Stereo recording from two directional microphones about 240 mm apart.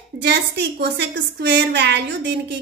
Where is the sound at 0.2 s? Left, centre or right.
Right.